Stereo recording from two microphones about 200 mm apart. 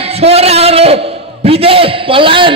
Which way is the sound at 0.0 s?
30° right (ahead or behind).